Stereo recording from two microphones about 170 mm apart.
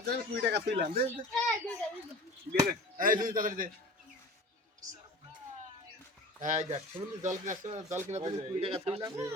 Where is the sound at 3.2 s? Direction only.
55° right (ahead or behind).